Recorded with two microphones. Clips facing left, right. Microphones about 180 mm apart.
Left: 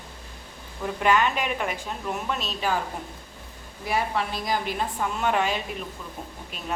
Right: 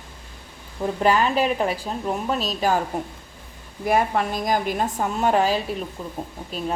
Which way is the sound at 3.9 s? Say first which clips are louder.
Right 6 dB; 50° right (ahead or behind).